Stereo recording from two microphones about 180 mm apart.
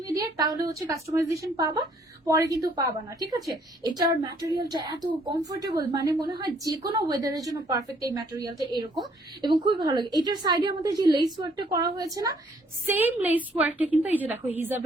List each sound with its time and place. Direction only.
0.1 s a woman's voice: 20° right (ahead or behind)